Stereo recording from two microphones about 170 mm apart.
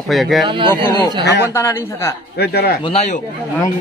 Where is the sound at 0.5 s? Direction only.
30° right (ahead or behind).